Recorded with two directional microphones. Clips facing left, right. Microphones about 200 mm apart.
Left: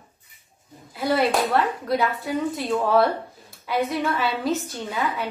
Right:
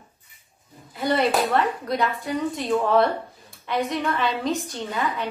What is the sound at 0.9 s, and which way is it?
A woman's voice, centre (ahead or behind).